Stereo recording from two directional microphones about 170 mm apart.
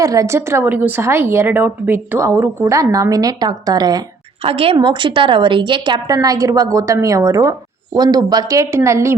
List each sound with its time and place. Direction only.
0.0 s a woman's voice: 20° right (ahead or behind)
4.4 s a woman's voice: 35° right (ahead or behind); by 9.1 s 15° right (ahead or behind)